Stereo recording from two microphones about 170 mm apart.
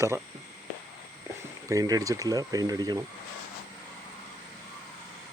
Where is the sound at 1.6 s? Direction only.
20° right (ahead or behind).